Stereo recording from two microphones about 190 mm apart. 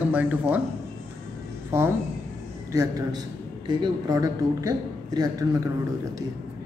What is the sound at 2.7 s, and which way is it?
Speech, 15° right (ahead or behind).